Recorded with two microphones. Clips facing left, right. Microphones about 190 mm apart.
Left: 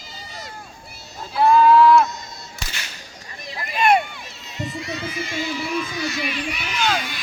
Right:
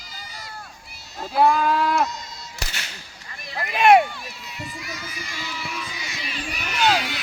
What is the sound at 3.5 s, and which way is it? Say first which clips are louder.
Speech: right 3 dB; 65° right (ahead or behind).